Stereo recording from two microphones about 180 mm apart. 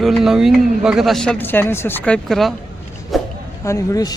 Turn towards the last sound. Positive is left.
turn(degrees=20)  # may be behind; listen again after turning